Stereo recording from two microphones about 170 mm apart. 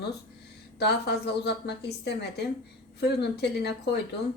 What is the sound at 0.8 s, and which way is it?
A woman's voice, 75° left (ahead or behind).